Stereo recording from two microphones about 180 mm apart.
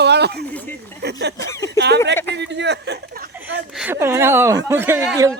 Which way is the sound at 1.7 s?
70° right (ahead or behind).